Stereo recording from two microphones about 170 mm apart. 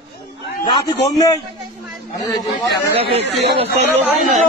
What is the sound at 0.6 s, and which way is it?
Speech, 20° left (ahead or behind).